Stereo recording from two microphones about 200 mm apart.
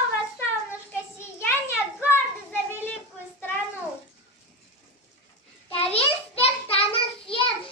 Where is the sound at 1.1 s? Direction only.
10° left (ahead or behind).